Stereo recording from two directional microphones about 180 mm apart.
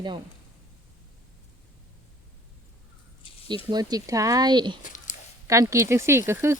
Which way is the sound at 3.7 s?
20° right (ahead or behind).